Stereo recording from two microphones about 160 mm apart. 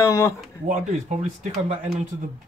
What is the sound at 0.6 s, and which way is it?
Speech, 50° right (ahead or behind).